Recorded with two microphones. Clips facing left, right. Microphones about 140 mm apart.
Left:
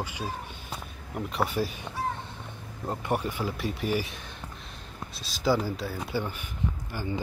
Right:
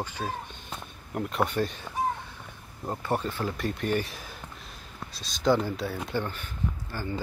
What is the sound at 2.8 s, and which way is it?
Speech, 15° left (ahead or behind).